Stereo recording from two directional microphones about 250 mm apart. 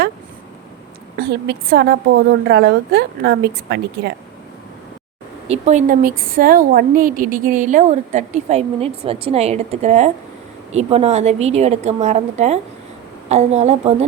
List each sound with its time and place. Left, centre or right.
1.2 s a woman's voice: right
5.5 s a woman's voice: right